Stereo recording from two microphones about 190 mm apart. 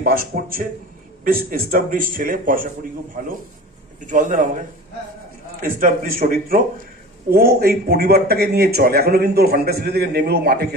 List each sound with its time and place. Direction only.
0.0 s a man's voice: 50° right (ahead or behind)
4.0 s a man's voice: 40° right (ahead or behind)
5.6 s a man's voice: 45° right (ahead or behind)